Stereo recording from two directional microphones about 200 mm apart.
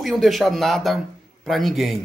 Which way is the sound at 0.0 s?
Centre (ahead or behind).